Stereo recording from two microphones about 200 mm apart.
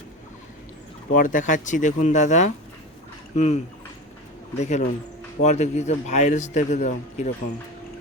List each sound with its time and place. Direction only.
1.1 s a man's voice: 40° left (ahead or behind)
4.6 s a man's voice: 35° left (ahead or behind)